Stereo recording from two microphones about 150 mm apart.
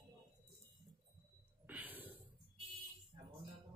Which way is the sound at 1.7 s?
10° right (ahead or behind).